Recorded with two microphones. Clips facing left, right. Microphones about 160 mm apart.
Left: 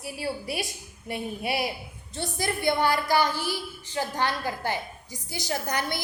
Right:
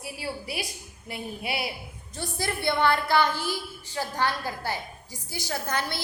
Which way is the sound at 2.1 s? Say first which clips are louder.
Left 2 dB; 20° left (ahead or behind).